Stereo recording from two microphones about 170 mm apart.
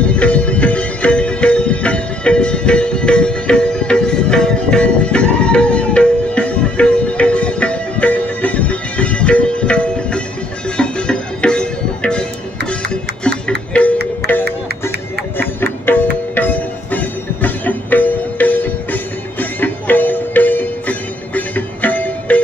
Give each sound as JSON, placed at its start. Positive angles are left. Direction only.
{"t": 0.1, "sound": "music", "side_deg": 5}
{"t": 14.4, "sound": "music", "side_deg": -70}
{"t": 15.3, "sound": "music", "side_deg": 10}